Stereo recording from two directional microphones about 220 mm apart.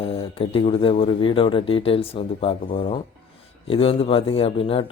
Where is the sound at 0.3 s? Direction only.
25° left (ahead or behind).